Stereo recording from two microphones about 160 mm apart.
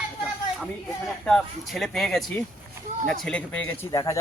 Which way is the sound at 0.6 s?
Centre (ahead or behind).